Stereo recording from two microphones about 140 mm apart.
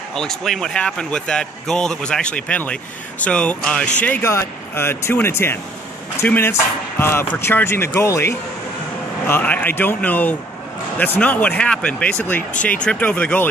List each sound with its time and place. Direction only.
0.1 s speech: 5° left (ahead or behind)